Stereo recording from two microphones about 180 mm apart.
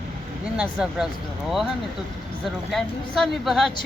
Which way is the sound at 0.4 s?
5° right (ahead or behind).